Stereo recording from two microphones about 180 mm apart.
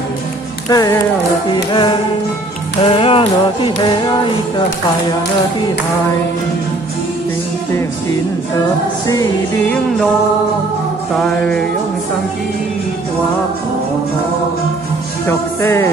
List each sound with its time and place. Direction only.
0.7 s music: 20° left (ahead or behind)
9.0 s music: 20° left (ahead or behind)
11.1 s music: 5° left (ahead or behind)
15.2 s music: 15° left (ahead or behind)